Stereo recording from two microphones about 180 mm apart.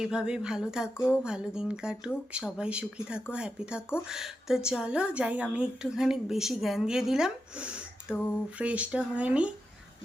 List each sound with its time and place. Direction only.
0.0 s a woman's voice: 5° right (ahead or behind)